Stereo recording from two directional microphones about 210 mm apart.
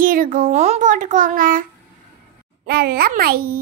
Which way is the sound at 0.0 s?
40° right (ahead or behind).